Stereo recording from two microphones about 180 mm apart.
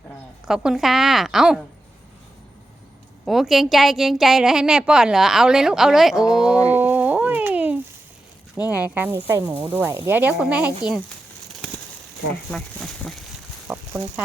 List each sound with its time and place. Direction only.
0.4 s a woman's voice: 5° right (ahead or behind)
3.2 s a woman's voice: centre (ahead or behind)
6.7 s a sound: 10° right (ahead or behind)
8.5 s speech: 20° left (ahead or behind)
8.8 s speech: 10° right (ahead or behind)
12.3 s speech: 5° left (ahead or behind)
13.7 s a sound: 5° left (ahead or behind)